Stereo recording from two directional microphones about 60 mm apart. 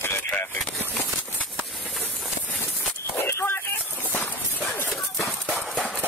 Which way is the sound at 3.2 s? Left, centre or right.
Left.